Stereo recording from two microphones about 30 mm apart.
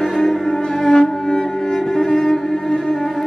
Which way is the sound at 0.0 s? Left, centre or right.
Centre.